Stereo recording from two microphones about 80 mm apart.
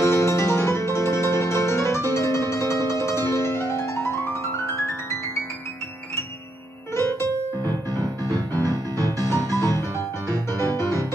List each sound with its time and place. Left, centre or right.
0.0 s music: left
7.0 s music: left
7.6 s music: right